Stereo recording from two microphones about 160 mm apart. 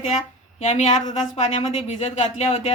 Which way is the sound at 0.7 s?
45° left (ahead or behind).